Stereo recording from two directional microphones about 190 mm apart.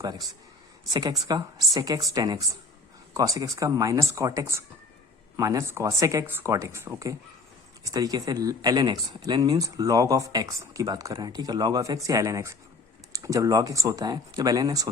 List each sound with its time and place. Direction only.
1.3 s speech: 20° right (ahead or behind)